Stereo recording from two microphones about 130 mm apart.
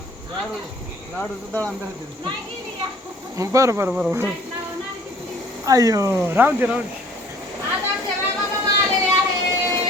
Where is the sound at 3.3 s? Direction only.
25° right (ahead or behind).